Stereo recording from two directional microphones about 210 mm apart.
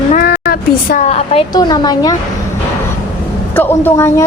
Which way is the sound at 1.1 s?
30° left (ahead or behind).